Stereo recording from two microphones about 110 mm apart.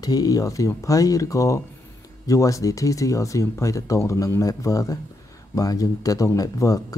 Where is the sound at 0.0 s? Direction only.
35° left (ahead or behind).